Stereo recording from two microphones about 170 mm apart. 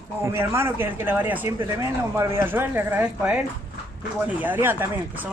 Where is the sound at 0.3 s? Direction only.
15° right (ahead or behind).